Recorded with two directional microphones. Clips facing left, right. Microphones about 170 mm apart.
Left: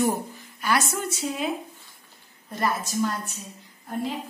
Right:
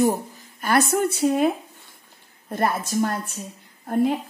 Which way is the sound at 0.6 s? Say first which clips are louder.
Right 6 dB; 55° right (ahead or behind).